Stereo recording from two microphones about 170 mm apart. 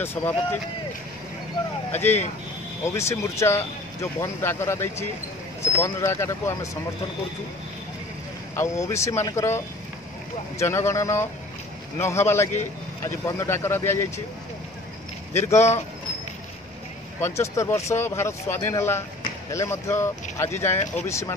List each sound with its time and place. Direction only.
0.0 s speech: 15° left (ahead or behind)
1.9 s speech: 10° left (ahead or behind)
8.5 s speech: 15° left (ahead or behind)
10.6 s speech: 15° left (ahead or behind)
15.3 s speech: 15° left (ahead or behind)
17.2 s speech: 15° left (ahead or behind)